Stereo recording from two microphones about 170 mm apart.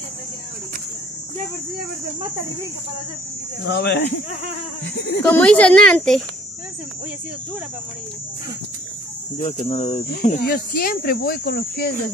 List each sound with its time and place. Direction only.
3.7 s speech: 70° left (ahead or behind)
4.8 s speech: 85° left
5.3 s speech: 5° left (ahead or behind)
9.7 s speech: 40° left (ahead or behind)
10.5 s speech: 60° left (ahead or behind)